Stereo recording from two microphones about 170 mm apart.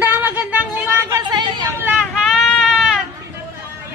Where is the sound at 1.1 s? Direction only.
25° right (ahead or behind).